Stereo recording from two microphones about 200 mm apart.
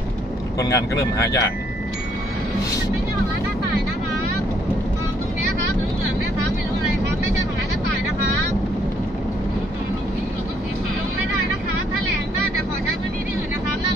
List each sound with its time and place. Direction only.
0.6 s speech: 15° left (ahead or behind)